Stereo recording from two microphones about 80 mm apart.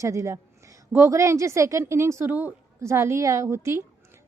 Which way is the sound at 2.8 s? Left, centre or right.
Right.